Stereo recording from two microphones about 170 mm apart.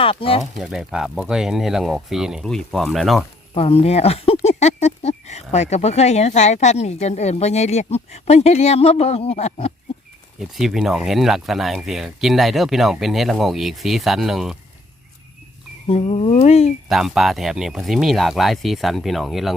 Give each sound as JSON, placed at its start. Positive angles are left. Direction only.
{"t": 0.0, "sound": "speech", "side_deg": 30}
{"t": 0.6, "sound": "speech", "side_deg": -5}
{"t": 3.5, "sound": "speech", "side_deg": 35}
{"t": 10.4, "sound": "speech", "side_deg": 0}
{"t": 15.9, "sound": "speech", "side_deg": 35}
{"t": 16.9, "sound": "speech", "side_deg": 0}